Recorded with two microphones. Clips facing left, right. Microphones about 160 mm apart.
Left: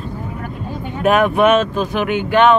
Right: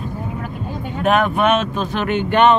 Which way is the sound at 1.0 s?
5° left (ahead or behind).